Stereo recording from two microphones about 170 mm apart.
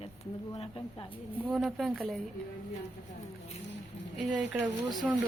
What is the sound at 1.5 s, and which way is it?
Speech, centre (ahead or behind).